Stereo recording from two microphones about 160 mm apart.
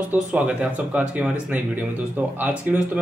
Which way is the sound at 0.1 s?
10° right (ahead or behind).